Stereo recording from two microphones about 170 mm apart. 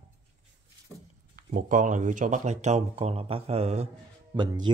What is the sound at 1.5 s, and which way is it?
Speech, 50° right (ahead or behind).